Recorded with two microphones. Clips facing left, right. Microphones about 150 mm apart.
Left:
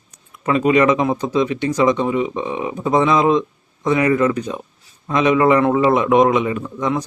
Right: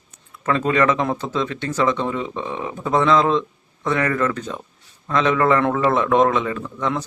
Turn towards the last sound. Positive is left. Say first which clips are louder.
# left 3 dB
turn(degrees=15)  # may be behind; listen again after turning